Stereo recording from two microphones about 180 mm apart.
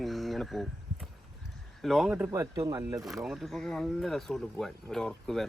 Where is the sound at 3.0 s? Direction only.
Centre (ahead or behind).